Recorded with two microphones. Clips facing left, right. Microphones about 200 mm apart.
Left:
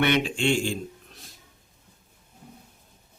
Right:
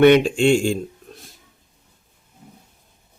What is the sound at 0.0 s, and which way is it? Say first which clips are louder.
Speech: right 10 dB; 45° right (ahead or behind).